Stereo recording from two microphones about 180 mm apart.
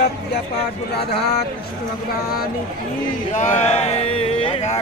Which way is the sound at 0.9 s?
65° left (ahead or behind).